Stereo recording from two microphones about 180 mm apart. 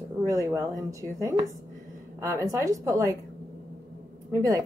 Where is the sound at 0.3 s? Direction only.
20° right (ahead or behind).